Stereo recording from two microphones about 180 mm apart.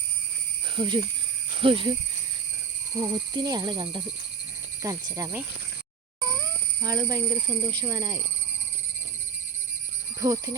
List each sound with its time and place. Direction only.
0.8 s speech: 25° right (ahead or behind)
3.0 s speech: 20° right (ahead or behind)
6.2 s cat: 15° right (ahead or behind)
7.8 s speech: 20° right (ahead or behind)
10.2 s speech: 20° right (ahead or behind)